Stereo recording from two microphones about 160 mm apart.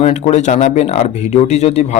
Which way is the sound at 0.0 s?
45° left (ahead or behind).